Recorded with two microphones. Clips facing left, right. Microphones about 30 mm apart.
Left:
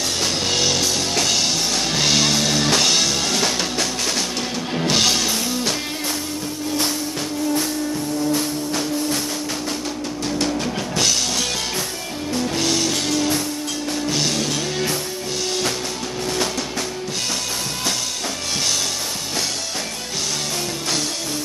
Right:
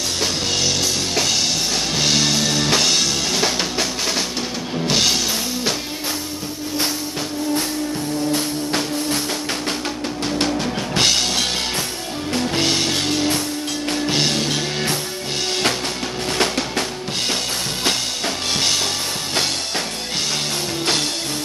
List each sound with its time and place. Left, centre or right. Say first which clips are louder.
0.2 s music: even; centre
4.8 s music: even; centre
11.0 s music: right 3 dB; right
16.3 s music: right 3 dB; right